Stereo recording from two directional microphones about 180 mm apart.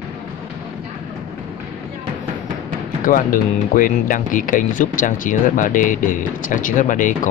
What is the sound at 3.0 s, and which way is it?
Speech, 50° left (ahead or behind).